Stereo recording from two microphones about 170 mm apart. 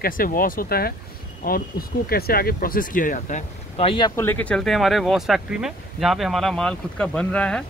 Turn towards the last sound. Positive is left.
turn(degrees=5)  # may be behind; listen again after turning